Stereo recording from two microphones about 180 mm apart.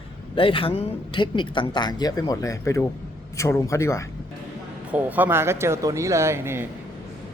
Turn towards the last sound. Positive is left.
turn(degrees=-15)  # may be behind; listen again after turning